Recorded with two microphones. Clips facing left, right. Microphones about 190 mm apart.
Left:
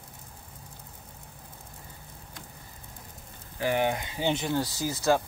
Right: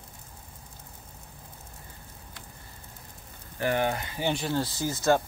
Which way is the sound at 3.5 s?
15° left (ahead or behind).